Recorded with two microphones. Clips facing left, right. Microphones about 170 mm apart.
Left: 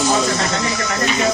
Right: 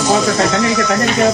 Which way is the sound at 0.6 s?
65° right (ahead or behind).